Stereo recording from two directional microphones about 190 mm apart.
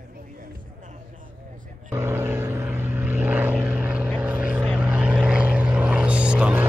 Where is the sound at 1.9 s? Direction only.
15° right (ahead or behind).